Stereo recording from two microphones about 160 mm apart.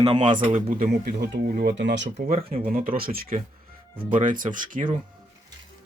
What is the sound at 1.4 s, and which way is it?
Speech, 85° right.